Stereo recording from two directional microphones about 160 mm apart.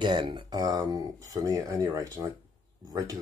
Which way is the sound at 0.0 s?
30° right (ahead or behind).